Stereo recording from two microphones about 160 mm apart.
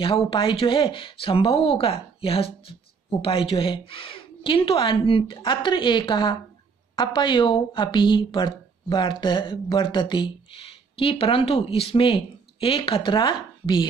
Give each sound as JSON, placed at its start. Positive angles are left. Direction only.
{"t": 0.3, "sound": "speech", "side_deg": 35}